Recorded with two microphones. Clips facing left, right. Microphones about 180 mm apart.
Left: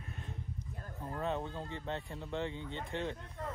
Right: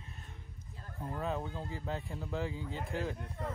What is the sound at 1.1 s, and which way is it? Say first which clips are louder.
Speech: even; centre (ahead or behind).